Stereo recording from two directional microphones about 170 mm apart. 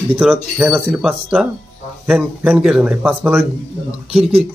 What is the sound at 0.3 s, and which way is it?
A man's voice, 10° right (ahead or behind).